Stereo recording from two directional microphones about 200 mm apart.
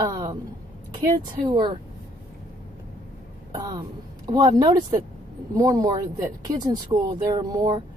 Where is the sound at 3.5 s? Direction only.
20° right (ahead or behind).